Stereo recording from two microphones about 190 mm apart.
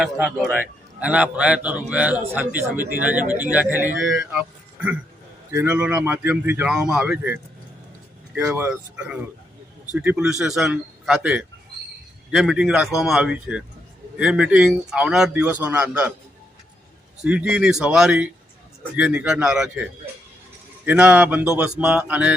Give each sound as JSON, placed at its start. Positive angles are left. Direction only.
{"t": 0.0, "sound": "speech", "side_deg": 0}
{"t": 8.4, "sound": "speech", "side_deg": -10}
{"t": 17.2, "sound": "speech", "side_deg": -5}